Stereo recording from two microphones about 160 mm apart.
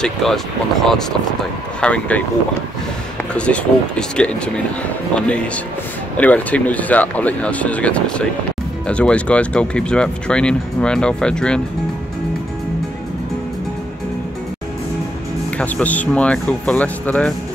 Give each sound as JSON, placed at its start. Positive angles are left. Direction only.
{"t": 0.0, "sound": "speech", "side_deg": 0}
{"t": 3.3, "sound": "speech", "side_deg": 5}
{"t": 15.5, "sound": "speech", "side_deg": 10}